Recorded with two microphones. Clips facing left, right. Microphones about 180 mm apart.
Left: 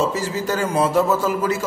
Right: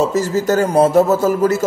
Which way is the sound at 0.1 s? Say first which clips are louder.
Right 7 dB; 45° right (ahead or behind).